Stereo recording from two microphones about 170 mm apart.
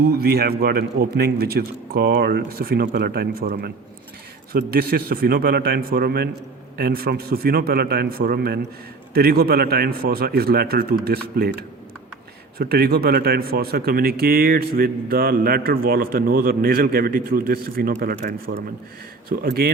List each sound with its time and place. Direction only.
0.2 s speech: 65° right (ahead or behind)
12.5 s speech: 65° right (ahead or behind)